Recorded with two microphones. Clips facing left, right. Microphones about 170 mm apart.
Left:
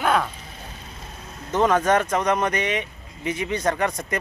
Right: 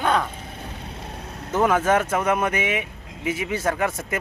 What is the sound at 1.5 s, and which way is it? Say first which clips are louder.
Speech: even; 10° right (ahead or behind).